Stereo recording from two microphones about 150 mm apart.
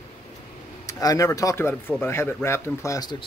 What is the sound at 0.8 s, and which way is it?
Speech, 20° left (ahead or behind).